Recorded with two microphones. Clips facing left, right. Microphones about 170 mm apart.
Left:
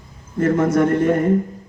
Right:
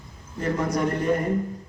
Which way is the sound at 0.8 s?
60° left (ahead or behind).